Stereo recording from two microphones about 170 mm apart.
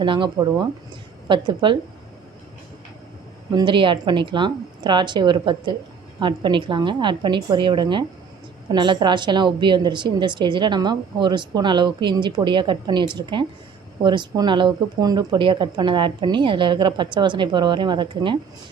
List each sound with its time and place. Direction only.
0.0 s speech: 30° right (ahead or behind)
3.5 s speech: 25° right (ahead or behind)